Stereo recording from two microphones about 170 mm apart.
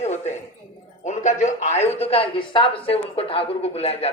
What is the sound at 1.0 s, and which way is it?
Speech, 45° left (ahead or behind).